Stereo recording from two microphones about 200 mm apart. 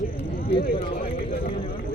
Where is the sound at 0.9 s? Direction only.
45° left (ahead or behind).